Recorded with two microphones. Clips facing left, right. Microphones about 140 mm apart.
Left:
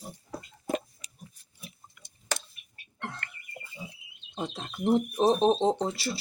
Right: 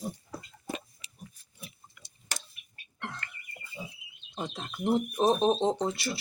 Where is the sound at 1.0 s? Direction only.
40° left (ahead or behind).